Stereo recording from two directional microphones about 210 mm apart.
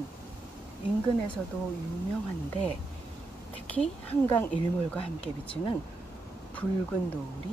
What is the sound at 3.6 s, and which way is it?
Speech, 10° left (ahead or behind).